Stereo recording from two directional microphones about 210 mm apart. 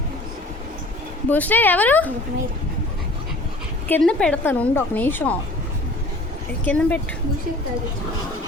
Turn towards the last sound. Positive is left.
turn(degrees=5)  # may be behind; listen again after turning